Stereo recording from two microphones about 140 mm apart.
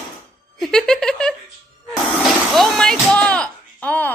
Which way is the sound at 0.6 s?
5° left (ahead or behind).